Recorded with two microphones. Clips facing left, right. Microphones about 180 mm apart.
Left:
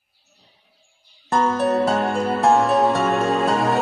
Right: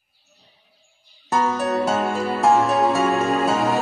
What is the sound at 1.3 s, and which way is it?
Music, centre (ahead or behind).